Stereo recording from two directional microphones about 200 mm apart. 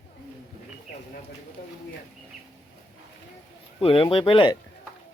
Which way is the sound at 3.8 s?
25° left (ahead or behind).